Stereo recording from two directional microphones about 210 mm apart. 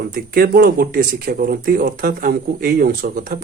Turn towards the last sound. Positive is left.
turn(degrees=-40)  # may be behind; listen again after turning